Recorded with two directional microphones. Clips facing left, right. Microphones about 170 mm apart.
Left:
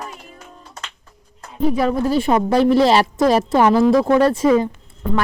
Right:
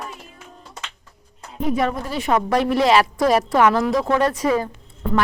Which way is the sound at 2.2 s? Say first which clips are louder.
Left 1 dB; 30° left (ahead or behind).